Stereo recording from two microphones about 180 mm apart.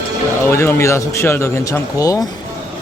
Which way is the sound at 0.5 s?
15° left (ahead or behind).